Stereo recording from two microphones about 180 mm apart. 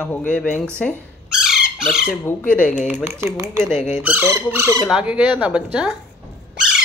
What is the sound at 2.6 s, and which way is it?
Speech, 45° left (ahead or behind).